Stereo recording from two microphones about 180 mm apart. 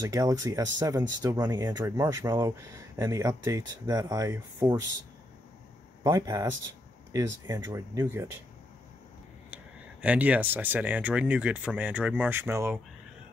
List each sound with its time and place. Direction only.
0.0 s speech: 20° right (ahead or behind)
6.0 s speech: 15° right (ahead or behind)
10.0 s speech: 10° right (ahead or behind)